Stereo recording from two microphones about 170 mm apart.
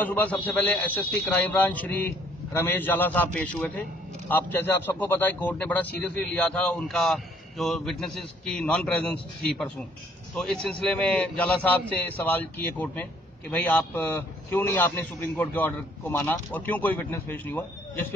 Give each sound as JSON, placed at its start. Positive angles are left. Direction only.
{"t": 0.0, "sound": "a man's voice", "side_deg": 10}